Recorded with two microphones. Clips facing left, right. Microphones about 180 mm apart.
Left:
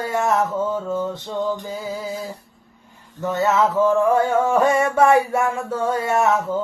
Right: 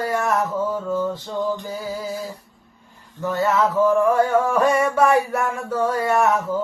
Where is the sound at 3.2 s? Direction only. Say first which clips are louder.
Left 1 dB; 20° left (ahead or behind).